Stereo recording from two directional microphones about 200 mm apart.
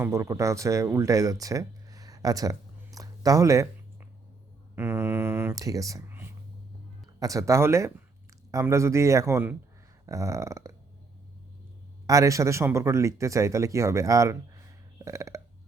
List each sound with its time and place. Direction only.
0.0 s speech: 15° right (ahead or behind)
4.7 s speech: 10° right (ahead or behind)
12.0 s speech: 15° right (ahead or behind)